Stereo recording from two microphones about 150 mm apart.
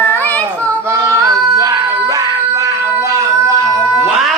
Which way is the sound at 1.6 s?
20° right (ahead or behind).